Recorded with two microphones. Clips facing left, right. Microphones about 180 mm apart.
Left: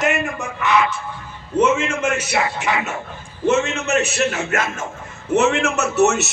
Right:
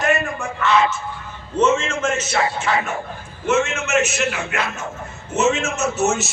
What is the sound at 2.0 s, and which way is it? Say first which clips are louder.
Music: even; 10° left (ahead or behind).